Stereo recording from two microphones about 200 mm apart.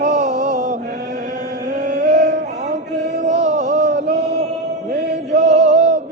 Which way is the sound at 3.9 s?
60° right (ahead or behind).